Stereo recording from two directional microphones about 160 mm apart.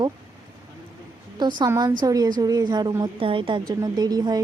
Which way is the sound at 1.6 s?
25° right (ahead or behind).